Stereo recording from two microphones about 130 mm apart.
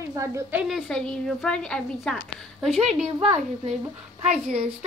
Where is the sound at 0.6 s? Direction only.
Centre (ahead or behind).